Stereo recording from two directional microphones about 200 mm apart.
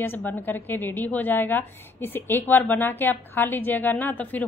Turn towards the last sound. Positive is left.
turn(degrees=10)  # may be behind; listen again after turning